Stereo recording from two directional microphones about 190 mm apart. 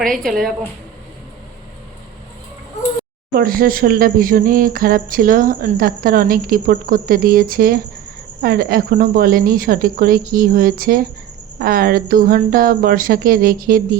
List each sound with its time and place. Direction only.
0.0 s a woman's voice: centre (ahead or behind)
3.3 s speech: 50° right (ahead or behind)